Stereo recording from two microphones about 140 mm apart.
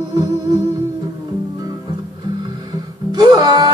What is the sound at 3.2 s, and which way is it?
Music, 30° right (ahead or behind).